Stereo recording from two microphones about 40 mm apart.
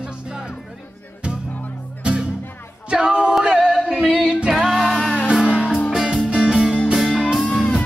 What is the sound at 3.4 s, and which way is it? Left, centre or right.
Singing, centre.